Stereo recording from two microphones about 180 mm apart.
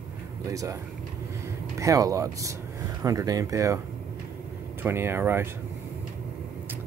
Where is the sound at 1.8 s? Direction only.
20° right (ahead or behind).